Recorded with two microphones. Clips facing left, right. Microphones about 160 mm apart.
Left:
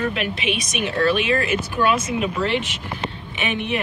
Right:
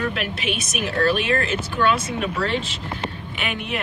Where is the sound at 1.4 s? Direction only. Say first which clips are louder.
Left 1 dB; 10° left (ahead or behind).